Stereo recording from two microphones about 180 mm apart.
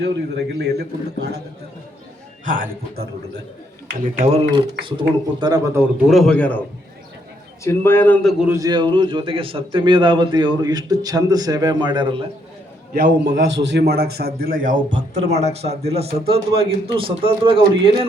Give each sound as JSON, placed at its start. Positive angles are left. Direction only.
{"t": 0.0, "sound": "a man's voice", "side_deg": -70}
{"t": 2.4, "sound": "a man's voice", "side_deg": -50}
{"t": 4.5, "sound": "a man's voice", "side_deg": -25}
{"t": 6.0, "sound": "a man's voice", "side_deg": 0}
{"t": 7.6, "sound": "a man's voice", "side_deg": 15}
{"t": 8.4, "sound": "a man's voice", "side_deg": -20}
{"t": 12.9, "sound": "a man's voice", "side_deg": -65}